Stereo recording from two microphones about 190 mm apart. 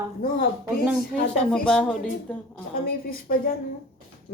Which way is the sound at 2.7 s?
50° left (ahead or behind).